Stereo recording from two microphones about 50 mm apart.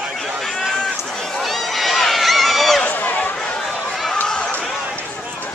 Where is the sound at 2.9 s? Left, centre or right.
Left.